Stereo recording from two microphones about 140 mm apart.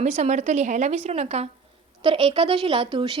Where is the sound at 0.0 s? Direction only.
55° right (ahead or behind).